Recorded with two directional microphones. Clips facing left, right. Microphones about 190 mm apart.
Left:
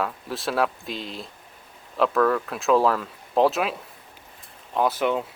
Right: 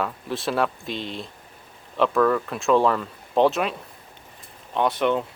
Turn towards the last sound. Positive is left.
turn(degrees=5)  # may be behind; listen again after turning